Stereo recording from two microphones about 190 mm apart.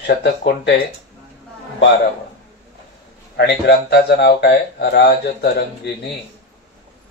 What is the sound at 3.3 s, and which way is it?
Speech, 60° left (ahead or behind).